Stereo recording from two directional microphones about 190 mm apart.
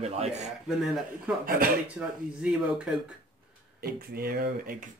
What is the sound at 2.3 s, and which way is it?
Speech, 5° right (ahead or behind).